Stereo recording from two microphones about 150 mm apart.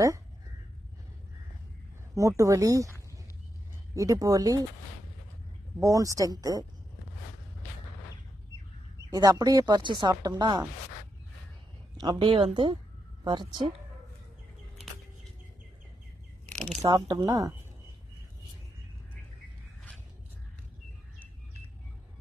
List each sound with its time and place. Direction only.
2.1 s speech: 20° right (ahead or behind)
3.9 s speech: 20° right (ahead or behind)
5.8 s speech: 20° right (ahead or behind)
9.1 s speech: 25° right (ahead or behind)
12.0 s speech: 30° right (ahead or behind)
16.9 s speech: 30° right (ahead or behind)